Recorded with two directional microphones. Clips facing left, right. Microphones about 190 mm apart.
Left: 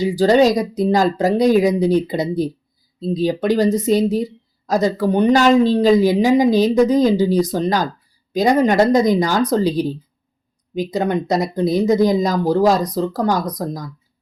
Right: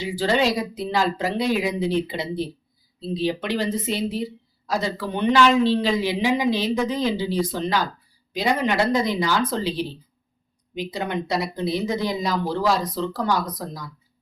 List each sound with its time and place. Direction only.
0.0 s speech: 40° left (ahead or behind)